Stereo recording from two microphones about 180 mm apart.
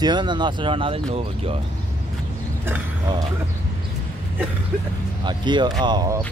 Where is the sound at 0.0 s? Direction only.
25° right (ahead or behind).